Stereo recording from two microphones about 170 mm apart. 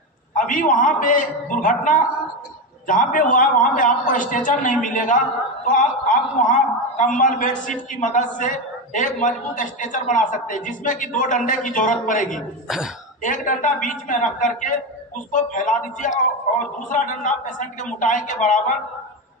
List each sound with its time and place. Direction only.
0.3 s a man's voice: 50° left (ahead or behind)
12.6 s speech: centre (ahead or behind)
13.2 s a man's voice: 50° left (ahead or behind)